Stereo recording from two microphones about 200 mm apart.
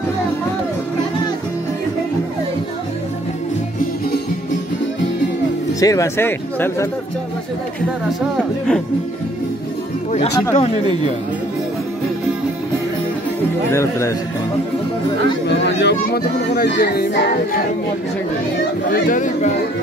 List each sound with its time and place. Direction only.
5.8 s speech: 15° left (ahead or behind)
10.5 s speech: 30° left (ahead or behind)
13.7 s speech: 15° left (ahead or behind)
15.4 s speech: 60° left (ahead or behind)
19.0 s speech: 40° left (ahead or behind)